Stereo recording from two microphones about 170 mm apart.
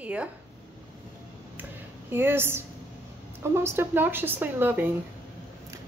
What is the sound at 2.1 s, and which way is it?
A woman's voice, 15° right (ahead or behind).